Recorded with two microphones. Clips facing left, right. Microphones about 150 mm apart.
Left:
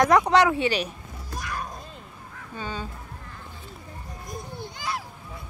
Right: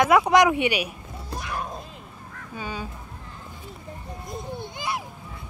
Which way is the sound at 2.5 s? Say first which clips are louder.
Even; 10° right (ahead or behind).